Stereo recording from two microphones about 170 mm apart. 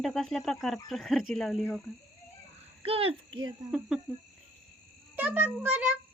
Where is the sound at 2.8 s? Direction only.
35° right (ahead or behind).